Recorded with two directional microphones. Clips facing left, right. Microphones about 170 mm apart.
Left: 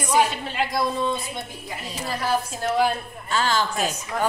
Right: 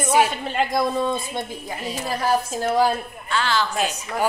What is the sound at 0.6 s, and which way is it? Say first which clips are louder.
Speech: right 3 dB; 50° right (ahead or behind).